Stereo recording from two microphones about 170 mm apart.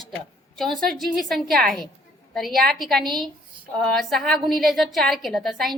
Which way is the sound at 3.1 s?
25° right (ahead or behind).